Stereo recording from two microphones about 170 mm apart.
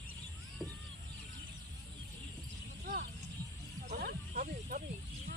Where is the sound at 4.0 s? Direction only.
60° right (ahead or behind).